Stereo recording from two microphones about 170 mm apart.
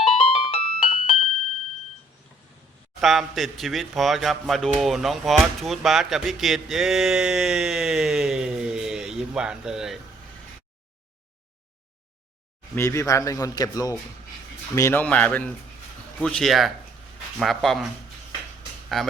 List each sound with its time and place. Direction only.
0.2 s music: 35° left (ahead or behind)
3.0 s speech: centre (ahead or behind)
12.7 s a man's voice: 15° left (ahead or behind)
15.0 s a man's voice: 10° left (ahead or behind)
18.9 s speech: centre (ahead or behind)